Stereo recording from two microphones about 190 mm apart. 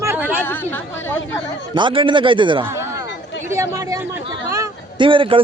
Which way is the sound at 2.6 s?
15° right (ahead or behind).